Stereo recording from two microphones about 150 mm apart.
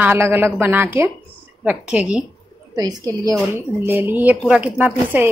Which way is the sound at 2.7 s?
25° right (ahead or behind).